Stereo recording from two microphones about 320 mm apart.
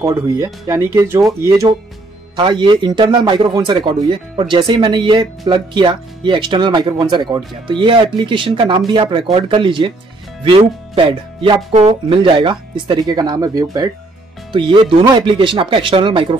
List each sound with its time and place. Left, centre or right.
0.0 s a man's voice: centre